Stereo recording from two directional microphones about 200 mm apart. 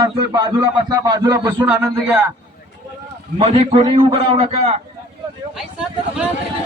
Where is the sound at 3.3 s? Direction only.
30° right (ahead or behind).